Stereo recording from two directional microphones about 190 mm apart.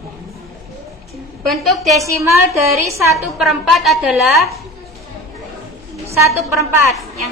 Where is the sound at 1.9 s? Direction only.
15° right (ahead or behind).